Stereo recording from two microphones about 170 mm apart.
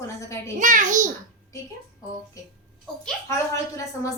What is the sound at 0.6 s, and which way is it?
Speech, 50° right (ahead or behind).